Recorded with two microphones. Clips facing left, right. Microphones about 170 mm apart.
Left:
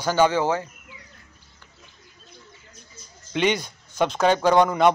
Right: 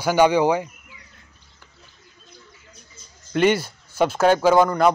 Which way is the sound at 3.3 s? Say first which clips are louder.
Right 4 dB; 5° right (ahead or behind).